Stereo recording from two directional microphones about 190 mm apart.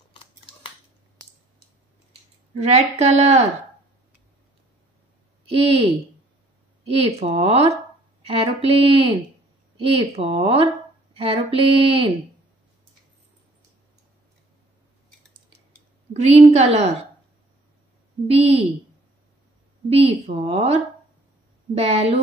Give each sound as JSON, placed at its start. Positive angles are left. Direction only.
{"t": 0.1, "sound": "scissors", "side_deg": 30}
{"t": 2.5, "sound": "a woman's voice", "side_deg": -35}
{"t": 5.5, "sound": "a woman's voice", "side_deg": -30}
{"t": 16.1, "sound": "a woman's voice", "side_deg": -35}
{"t": 18.2, "sound": "a woman's voice", "side_deg": -30}
{"t": 19.9, "sound": "a woman's voice", "side_deg": -30}